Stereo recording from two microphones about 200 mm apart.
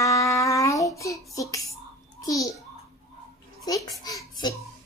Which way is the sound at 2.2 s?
15° left (ahead or behind).